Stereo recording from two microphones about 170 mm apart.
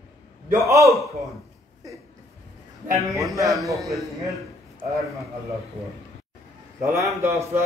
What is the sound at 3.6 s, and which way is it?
Speech, 20° right (ahead or behind).